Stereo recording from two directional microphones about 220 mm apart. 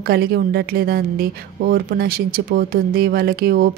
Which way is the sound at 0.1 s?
45° right (ahead or behind).